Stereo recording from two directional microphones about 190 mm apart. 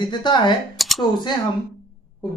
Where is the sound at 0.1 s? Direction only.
25° left (ahead or behind).